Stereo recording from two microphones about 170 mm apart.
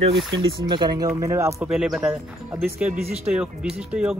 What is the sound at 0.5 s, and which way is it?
Speech, 25° right (ahead or behind).